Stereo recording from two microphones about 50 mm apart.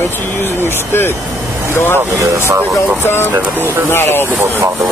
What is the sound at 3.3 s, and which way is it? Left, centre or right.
Speech, right.